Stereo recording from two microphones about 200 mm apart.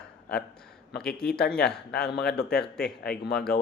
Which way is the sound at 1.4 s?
50° left (ahead or behind).